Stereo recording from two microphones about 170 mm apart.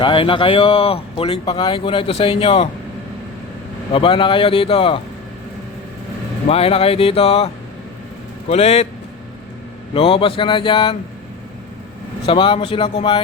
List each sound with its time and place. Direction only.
0.0 s speech: 30° left (ahead or behind)
3.9 s speech: 30° left (ahead or behind)
6.5 s speech: 35° left (ahead or behind)
9.9 s speech: 30° left (ahead or behind)
12.2 s speech: 30° left (ahead or behind)